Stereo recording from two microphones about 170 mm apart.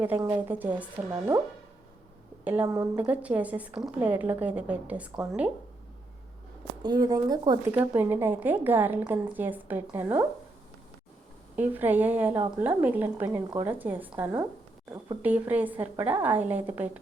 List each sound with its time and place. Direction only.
0.0 s a woman's voice: 15° right (ahead or behind)
2.4 s a woman's voice: 10° right (ahead or behind)
5.1 s speech: 20° right (ahead or behind)
6.8 s speech: 25° right (ahead or behind)
7.6 s a woman's voice: 10° right (ahead or behind)
11.5 s a woman's voice: 10° right (ahead or behind)